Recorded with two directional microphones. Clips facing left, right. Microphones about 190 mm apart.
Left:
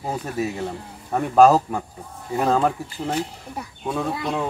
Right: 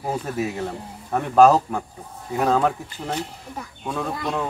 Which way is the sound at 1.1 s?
5° left (ahead or behind).